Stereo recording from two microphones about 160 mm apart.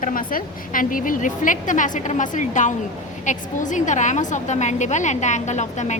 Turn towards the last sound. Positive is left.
turn(degrees=45)  # may be behind; listen again after turning